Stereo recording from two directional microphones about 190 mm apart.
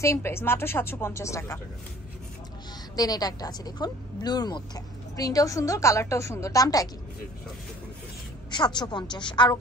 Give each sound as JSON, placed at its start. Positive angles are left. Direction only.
{"t": 0.0, "sound": "a woman's voice", "side_deg": 15}
{"t": 3.0, "sound": "a woman's voice", "side_deg": 20}
{"t": 8.5, "sound": "a woman's voice", "side_deg": 25}